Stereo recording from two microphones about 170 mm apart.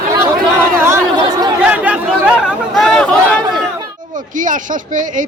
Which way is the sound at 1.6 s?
10° right (ahead or behind).